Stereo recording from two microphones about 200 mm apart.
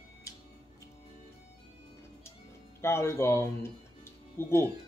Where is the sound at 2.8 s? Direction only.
15° left (ahead or behind).